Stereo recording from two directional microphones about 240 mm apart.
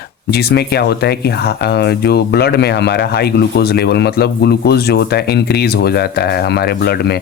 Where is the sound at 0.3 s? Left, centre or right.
Left.